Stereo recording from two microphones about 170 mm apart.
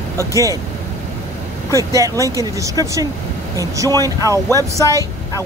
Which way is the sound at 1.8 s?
20° right (ahead or behind).